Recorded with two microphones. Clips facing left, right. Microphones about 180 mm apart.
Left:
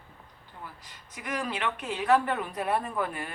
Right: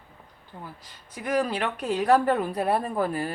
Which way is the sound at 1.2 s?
35° right (ahead or behind).